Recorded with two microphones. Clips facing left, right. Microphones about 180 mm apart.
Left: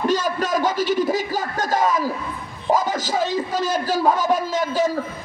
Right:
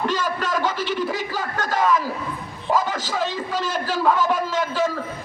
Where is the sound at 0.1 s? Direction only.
40° left (ahead or behind).